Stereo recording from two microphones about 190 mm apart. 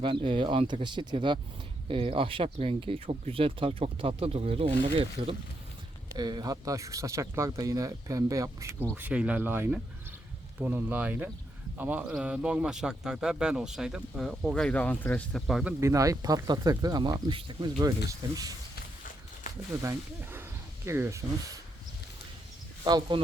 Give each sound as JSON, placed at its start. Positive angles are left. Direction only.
{"t": 0.0, "sound": "a man's voice", "side_deg": -25}
{"t": 15.8, "sound": "speech", "side_deg": -15}
{"t": 19.8, "sound": "speech", "side_deg": -15}
{"t": 22.8, "sound": "speech", "side_deg": -20}